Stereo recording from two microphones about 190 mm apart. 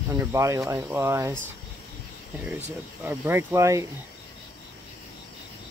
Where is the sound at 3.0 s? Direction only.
10° right (ahead or behind).